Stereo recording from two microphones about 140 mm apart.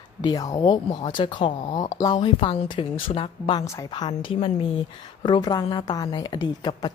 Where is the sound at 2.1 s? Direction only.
40° left (ahead or behind).